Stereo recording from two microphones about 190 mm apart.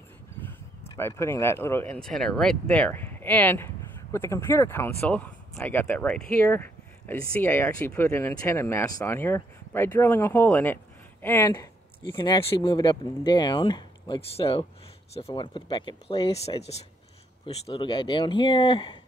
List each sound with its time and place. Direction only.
0.4 s speech: 10° left (ahead or behind); by 18.9 s 25° left (ahead or behind)